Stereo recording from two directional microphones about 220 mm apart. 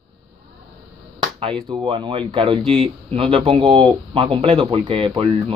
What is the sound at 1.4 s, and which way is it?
Speech, 20° right (ahead or behind).